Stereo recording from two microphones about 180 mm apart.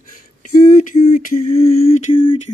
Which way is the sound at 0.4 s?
45° left (ahead or behind).